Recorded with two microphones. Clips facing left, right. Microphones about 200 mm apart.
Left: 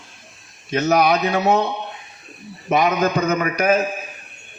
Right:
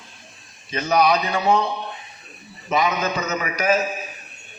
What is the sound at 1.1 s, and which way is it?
Speech, 65° left (ahead or behind).